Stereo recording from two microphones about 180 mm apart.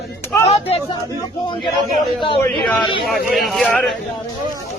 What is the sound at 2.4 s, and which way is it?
Speech, 25° left (ahead or behind).